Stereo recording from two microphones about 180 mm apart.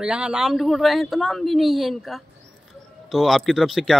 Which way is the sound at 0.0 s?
5° right (ahead or behind).